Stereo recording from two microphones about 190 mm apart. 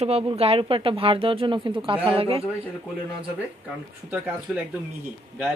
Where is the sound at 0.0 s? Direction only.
30° right (ahead or behind).